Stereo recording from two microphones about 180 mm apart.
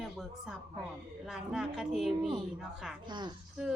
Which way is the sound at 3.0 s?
25° right (ahead or behind).